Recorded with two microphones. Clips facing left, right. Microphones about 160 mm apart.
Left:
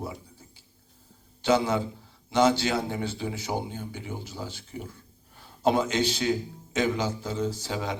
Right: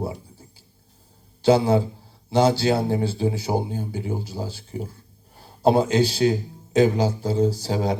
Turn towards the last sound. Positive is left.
turn(degrees=-35)  # may be behind; listen again after turning